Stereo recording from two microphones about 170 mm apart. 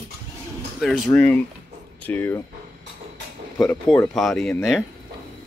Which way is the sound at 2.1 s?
10° left (ahead or behind).